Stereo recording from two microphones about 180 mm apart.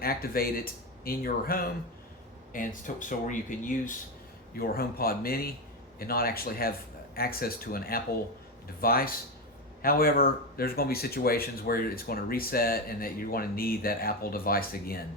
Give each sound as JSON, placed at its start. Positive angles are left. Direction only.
{"t": 0.0, "sound": "speech", "side_deg": 55}